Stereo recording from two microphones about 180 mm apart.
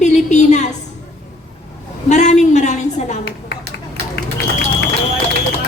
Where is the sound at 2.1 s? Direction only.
40° left (ahead or behind).